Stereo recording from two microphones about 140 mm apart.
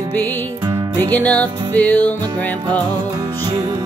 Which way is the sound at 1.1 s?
10° left (ahead or behind).